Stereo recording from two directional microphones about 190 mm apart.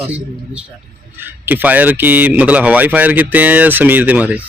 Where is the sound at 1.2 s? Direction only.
10° right (ahead or behind).